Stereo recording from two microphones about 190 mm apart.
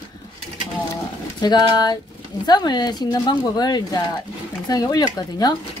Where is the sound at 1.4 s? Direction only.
20° left (ahead or behind).